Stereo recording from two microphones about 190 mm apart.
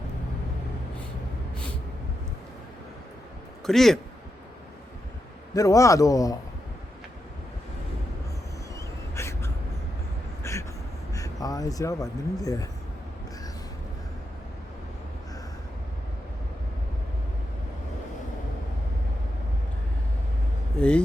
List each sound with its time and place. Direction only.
3.7 s speech: centre (ahead or behind)
5.5 s a man's voice: 15° left (ahead or behind)
9.1 s a sound: 15° left (ahead or behind)
10.4 s vehicle: 15° left (ahead or behind)
11.1 s speech: 20° left (ahead or behind)
20.7 s speech: 5° left (ahead or behind)